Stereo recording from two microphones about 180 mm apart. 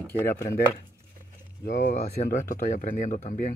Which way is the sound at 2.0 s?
45° left (ahead or behind).